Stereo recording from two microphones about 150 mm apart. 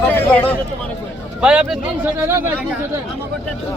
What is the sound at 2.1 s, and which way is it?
Speech, 15° right (ahead or behind).